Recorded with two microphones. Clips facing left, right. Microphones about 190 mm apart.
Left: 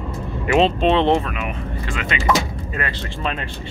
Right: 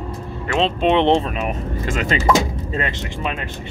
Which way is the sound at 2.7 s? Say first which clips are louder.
Right 1 dB; 20° right (ahead or behind).